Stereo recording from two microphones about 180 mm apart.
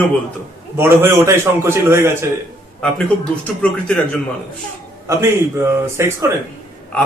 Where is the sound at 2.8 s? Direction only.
5° left (ahead or behind).